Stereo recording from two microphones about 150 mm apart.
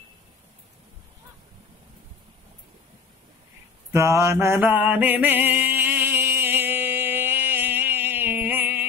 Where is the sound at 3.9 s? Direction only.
20° right (ahead or behind).